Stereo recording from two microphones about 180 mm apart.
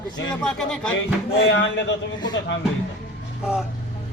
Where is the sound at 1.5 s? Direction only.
90° left.